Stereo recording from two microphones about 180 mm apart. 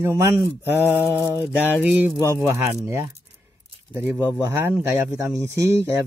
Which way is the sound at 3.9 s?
5° right (ahead or behind).